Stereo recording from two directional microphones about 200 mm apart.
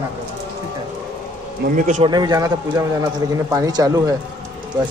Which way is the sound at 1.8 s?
40° right (ahead or behind).